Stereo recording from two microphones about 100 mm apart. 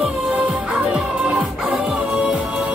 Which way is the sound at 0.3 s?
10° right (ahead or behind).